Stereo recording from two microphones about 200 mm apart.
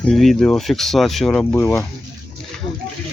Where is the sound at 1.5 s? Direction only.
15° left (ahead or behind).